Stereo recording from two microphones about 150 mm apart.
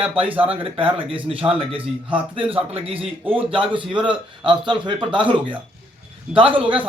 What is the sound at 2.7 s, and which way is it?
A man's voice, 40° right (ahead or behind).